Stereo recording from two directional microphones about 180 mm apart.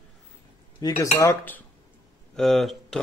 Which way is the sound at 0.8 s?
20° left (ahead or behind).